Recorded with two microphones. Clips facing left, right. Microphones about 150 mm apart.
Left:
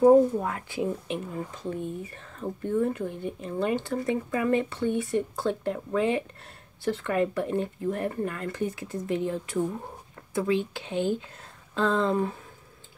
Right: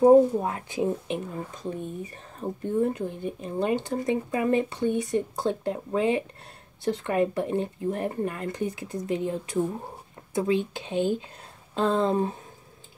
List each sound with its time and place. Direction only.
0.0 s speech: 25° right (ahead or behind)